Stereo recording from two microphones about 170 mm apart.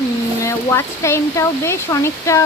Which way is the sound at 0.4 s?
15° left (ahead or behind).